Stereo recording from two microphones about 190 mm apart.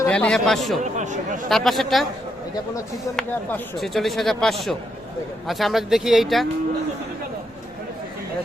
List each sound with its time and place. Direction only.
0.0 s a man's voice: 5° left (ahead or behind)
0.8 s speech: 40° right (ahead or behind)
1.5 s speech: centre (ahead or behind)
3.2 s speech: centre (ahead or behind)